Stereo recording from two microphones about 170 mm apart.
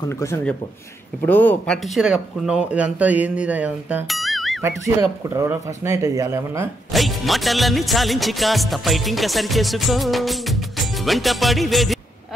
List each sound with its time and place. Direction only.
0.1 s speech: 15° left (ahead or behind)
1.8 s speech: 5° right (ahead or behind)
5.3 s speech: 15° right (ahead or behind)
6.9 s music: centre (ahead or behind)